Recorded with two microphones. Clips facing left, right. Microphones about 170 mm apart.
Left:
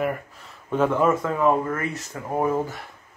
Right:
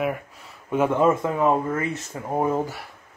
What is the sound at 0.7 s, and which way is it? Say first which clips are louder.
Speech: right 1 dB; 15° right (ahead or behind).